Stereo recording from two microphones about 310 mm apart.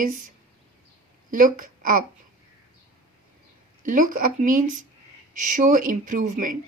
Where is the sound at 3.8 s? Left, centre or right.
Right.